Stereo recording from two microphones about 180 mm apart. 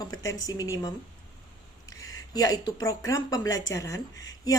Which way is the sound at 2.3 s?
20° left (ahead or behind).